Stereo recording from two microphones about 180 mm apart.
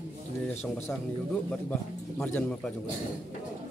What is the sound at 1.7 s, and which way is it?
Speech, 10° left (ahead or behind).